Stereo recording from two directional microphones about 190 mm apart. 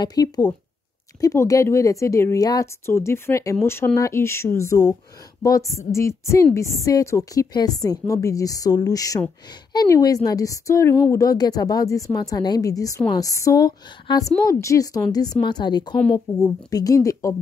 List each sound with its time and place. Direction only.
0.0 s speech: 20° left (ahead or behind)